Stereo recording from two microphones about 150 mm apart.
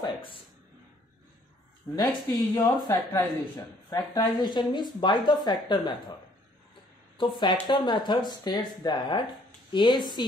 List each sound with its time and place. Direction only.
0.0 s a sound: 35° left (ahead or behind)
2.2 s speech: 15° left (ahead or behind)
7.2 s speech: 30° left (ahead or behind)